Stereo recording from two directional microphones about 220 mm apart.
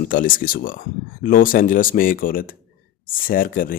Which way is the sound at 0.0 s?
40° left (ahead or behind).